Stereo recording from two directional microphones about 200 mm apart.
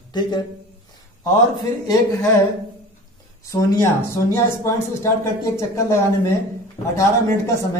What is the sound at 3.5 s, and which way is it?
Speech, 15° left (ahead or behind).